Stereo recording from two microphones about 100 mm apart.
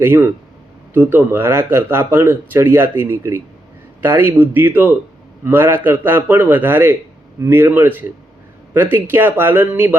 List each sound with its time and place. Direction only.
0.0 s speech: 25° right (ahead or behind)